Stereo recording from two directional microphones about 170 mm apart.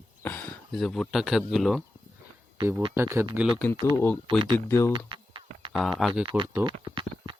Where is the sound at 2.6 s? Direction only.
15° right (ahead or behind).